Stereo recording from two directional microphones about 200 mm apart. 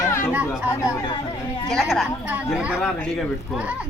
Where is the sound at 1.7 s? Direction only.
Centre (ahead or behind).